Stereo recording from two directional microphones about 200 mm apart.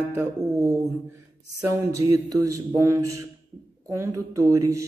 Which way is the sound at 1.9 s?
15° right (ahead or behind).